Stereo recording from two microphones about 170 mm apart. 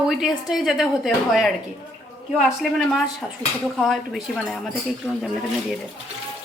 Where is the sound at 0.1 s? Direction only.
Centre (ahead or behind).